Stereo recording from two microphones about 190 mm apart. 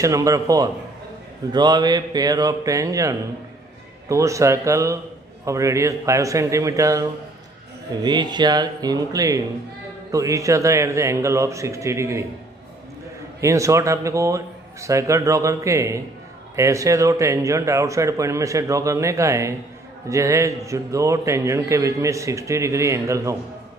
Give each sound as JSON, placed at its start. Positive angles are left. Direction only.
{"t": 0.0, "sound": "a man's voice", "side_deg": -15}
{"t": 13.4, "sound": "a man's voice", "side_deg": -15}